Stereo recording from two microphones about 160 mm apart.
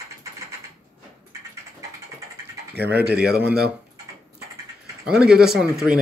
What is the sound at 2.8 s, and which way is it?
Speech, 90° right.